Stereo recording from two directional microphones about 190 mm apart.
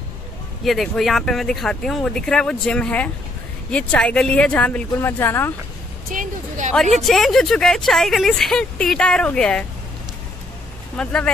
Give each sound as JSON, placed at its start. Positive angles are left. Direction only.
{"t": 0.7, "sound": "speech", "side_deg": 0}
{"t": 6.0, "sound": "a sound", "side_deg": -45}
{"t": 6.7, "sound": "speech", "side_deg": 0}
{"t": 11.0, "sound": "speech", "side_deg": 5}